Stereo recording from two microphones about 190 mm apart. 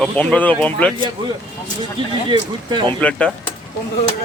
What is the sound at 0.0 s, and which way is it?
Speech, 5° left (ahead or behind).